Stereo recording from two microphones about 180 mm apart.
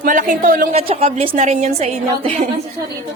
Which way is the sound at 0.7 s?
35° right (ahead or behind).